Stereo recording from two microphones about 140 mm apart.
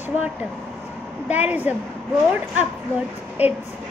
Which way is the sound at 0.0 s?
10° right (ahead or behind).